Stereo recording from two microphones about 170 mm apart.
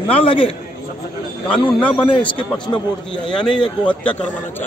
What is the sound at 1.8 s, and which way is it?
Speech, 10° left (ahead or behind).